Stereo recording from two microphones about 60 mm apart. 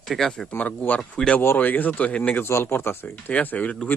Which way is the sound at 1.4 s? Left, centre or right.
Left.